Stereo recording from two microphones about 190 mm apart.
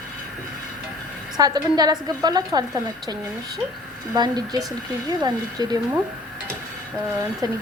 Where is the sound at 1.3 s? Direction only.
20° right (ahead or behind).